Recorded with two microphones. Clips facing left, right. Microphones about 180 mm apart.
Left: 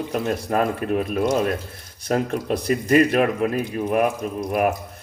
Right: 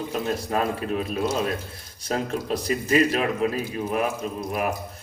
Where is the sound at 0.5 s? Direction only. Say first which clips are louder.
Left 5 dB; 55° left (ahead or behind).